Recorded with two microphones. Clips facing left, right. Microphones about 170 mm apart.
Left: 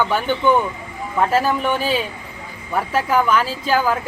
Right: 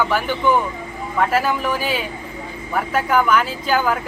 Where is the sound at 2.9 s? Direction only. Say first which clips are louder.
Even; 30° left (ahead or behind).